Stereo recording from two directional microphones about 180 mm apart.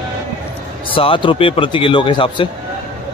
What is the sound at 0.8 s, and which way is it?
Speech, 30° left (ahead or behind).